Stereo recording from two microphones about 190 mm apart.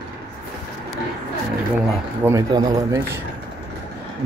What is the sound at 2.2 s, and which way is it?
Speech, 15° right (ahead or behind).